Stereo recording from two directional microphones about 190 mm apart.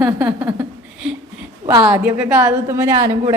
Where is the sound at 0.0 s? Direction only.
10° right (ahead or behind).